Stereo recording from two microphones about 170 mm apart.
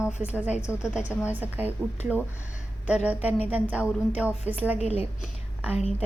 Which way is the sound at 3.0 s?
10° right (ahead or behind).